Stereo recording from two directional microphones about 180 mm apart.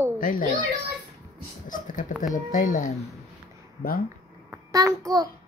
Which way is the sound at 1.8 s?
45° left (ahead or behind).